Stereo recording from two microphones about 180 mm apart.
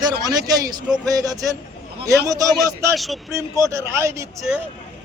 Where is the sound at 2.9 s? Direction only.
Centre (ahead or behind).